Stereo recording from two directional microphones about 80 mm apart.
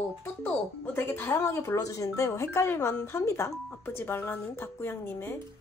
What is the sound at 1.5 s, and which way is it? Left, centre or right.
Speech, left.